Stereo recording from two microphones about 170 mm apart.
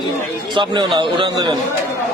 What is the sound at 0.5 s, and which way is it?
A man's voice, 30° right (ahead or behind).